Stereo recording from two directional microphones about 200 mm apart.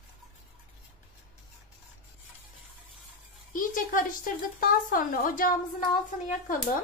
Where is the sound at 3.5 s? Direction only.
45° left (ahead or behind).